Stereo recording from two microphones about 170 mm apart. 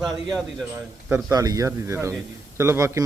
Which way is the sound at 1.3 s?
20° right (ahead or behind).